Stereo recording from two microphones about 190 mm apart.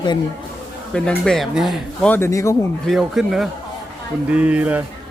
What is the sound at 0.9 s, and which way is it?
Speech, 5° left (ahead or behind).